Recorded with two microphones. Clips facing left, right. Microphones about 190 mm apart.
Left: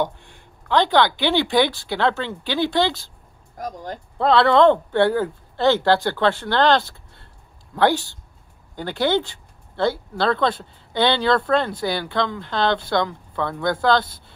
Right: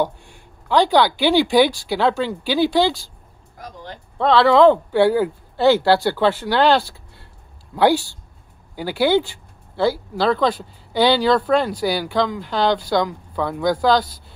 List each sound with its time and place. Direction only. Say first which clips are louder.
0.3 s speech: right 2 dB; 10° right (ahead or behind)
3.5 s speech: left 5 dB; 45° left (ahead or behind)
4.2 s speech: right 2 dB; centre (ahead or behind)